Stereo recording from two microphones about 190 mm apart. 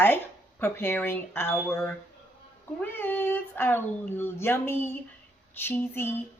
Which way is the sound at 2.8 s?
10° left (ahead or behind).